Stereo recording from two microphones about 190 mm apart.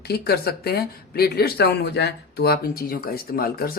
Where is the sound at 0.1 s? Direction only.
55° left (ahead or behind).